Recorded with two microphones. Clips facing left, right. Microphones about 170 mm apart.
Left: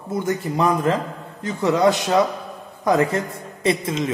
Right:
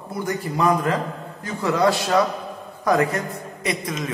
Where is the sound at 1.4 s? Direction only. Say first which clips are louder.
Left 2 dB; 20° left (ahead or behind).